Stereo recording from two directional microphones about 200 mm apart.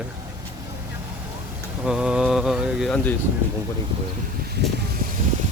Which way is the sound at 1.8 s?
5° right (ahead or behind).